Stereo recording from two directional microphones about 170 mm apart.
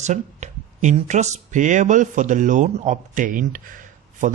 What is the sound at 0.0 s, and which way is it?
Speech, 45° right (ahead or behind).